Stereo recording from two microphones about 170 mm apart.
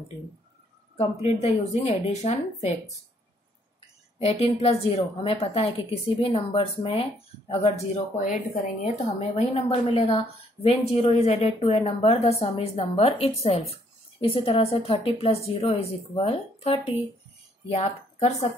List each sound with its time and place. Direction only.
0.9 s a woman's voice: 40° left (ahead or behind)
4.2 s a woman's voice: 35° left (ahead or behind)
8.8 s a woman's voice: 40° left (ahead or behind)